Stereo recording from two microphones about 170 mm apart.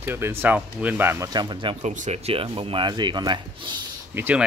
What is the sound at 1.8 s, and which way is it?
Speech, 45° right (ahead or behind).